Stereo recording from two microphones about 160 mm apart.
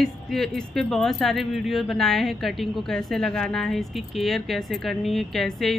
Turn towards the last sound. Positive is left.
turn(degrees=0)  # may be behind; listen again after turning